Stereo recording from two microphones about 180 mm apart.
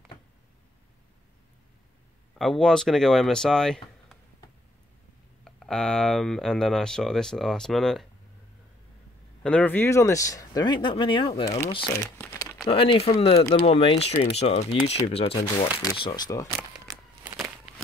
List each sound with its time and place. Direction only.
2.3 s speech: centre (ahead or behind)
5.4 s speech: 5° left (ahead or behind)
9.4 s speech: 5° left (ahead or behind); by 12.1 s 25° left (ahead or behind)
12.2 s crumpling: 15° left (ahead or behind)
12.6 s speech: 30° left (ahead or behind)
16.0 s speech: 20° left (ahead or behind)
17.2 s a sound: 5° right (ahead or behind)